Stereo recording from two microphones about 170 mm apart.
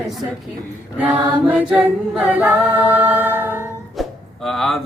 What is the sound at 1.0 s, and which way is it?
A capella, 5° right (ahead or behind).